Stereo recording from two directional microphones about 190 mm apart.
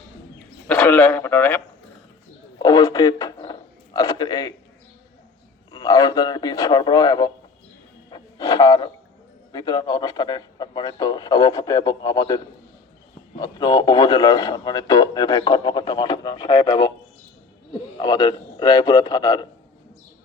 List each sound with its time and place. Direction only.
0.7 s a man's voice: 5° left (ahead or behind)
5.7 s a man's voice: 20° left (ahead or behind)
8.1 s a sound: 20° left (ahead or behind)
9.5 s a man's voice: 20° left (ahead or behind)
13.4 s a man's voice: 20° left (ahead or behind)
18.0 s a man's voice: 25° left (ahead or behind)